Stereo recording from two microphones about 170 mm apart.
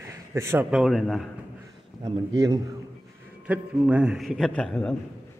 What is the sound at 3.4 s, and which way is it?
A man's voice, 10° right (ahead or behind).